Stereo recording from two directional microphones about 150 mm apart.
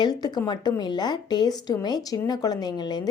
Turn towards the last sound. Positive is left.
turn(degrees=30)  # may be behind; listen again after turning